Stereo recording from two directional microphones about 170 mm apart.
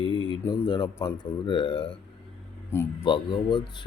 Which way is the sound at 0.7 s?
20° left (ahead or behind).